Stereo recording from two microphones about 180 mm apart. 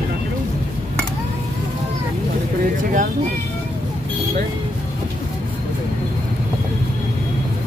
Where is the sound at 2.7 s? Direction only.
45° right (ahead or behind).